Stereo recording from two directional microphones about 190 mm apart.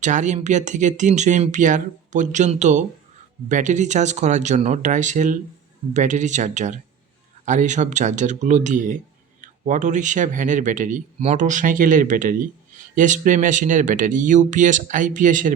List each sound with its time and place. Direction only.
0.0 s speech: 40° right (ahead or behind)